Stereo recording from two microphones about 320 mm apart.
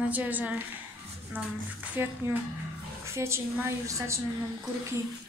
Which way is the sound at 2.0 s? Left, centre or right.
Centre.